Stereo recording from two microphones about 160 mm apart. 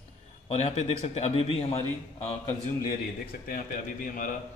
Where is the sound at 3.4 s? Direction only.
60° left (ahead or behind).